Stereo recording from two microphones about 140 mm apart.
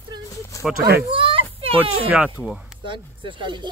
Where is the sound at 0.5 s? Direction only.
25° left (ahead or behind).